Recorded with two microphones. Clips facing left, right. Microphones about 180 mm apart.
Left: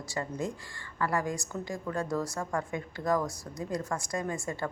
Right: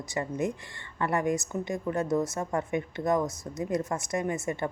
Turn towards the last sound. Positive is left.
turn(degrees=-20)  # may be behind; listen again after turning